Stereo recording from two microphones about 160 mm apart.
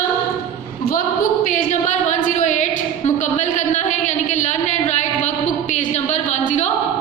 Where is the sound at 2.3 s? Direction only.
50° left (ahead or behind).